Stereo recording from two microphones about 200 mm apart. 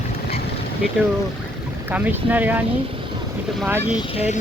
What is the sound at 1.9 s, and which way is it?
Speech, 10° right (ahead or behind).